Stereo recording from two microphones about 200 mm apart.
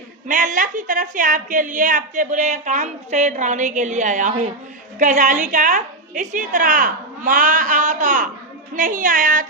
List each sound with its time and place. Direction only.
0.3 s a woman's voice: 40° right (ahead or behind)